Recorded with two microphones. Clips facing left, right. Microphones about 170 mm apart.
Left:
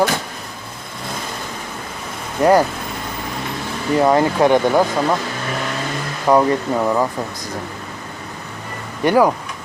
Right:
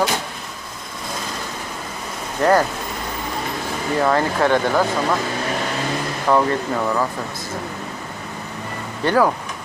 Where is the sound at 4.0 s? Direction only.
15° left (ahead or behind).